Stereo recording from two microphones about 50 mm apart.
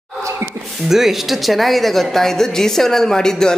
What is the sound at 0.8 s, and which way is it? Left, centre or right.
Speech, centre.